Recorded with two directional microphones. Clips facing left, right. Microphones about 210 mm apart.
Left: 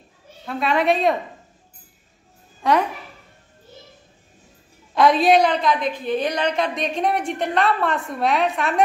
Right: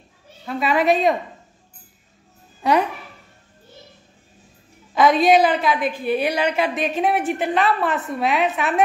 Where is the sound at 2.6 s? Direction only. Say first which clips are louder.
Even; 5° right (ahead or behind).